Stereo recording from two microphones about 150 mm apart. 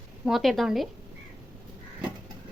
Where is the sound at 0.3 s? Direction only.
Centre (ahead or behind).